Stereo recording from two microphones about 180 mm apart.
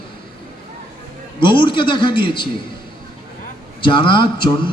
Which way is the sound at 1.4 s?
25° left (ahead or behind).